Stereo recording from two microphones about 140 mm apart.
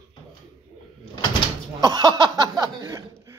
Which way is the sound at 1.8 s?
25° right (ahead or behind).